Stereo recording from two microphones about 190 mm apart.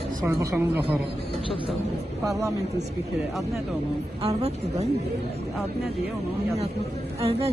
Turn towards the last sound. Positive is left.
turn(degrees=-30)  # may be behind; listen again after turning